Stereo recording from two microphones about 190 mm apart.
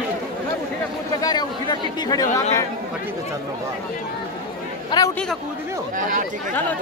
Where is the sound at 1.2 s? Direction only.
20° left (ahead or behind).